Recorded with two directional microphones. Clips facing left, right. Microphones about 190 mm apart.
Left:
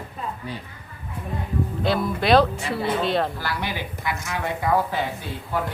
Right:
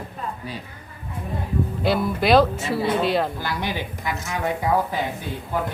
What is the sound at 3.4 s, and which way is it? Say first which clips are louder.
Speech: right 1 dB; 20° right (ahead or behind).